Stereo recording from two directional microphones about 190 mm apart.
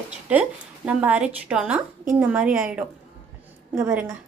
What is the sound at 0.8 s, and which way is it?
Speech, 10° right (ahead or behind).